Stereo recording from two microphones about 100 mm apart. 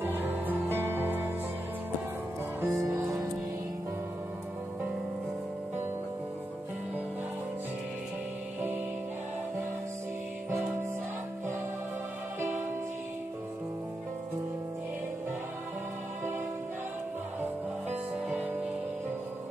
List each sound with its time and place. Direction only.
0.0 s music: 20° right (ahead or behind)
2.6 s music: 30° right (ahead or behind)
12.4 s music: 20° right (ahead or behind)